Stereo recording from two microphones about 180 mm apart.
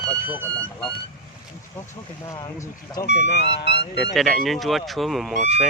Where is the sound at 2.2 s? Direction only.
15° left (ahead or behind).